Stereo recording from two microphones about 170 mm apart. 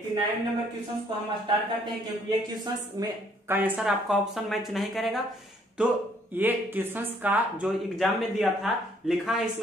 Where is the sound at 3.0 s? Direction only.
20° right (ahead or behind).